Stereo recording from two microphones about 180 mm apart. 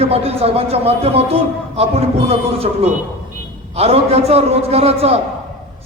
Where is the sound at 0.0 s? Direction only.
35° right (ahead or behind).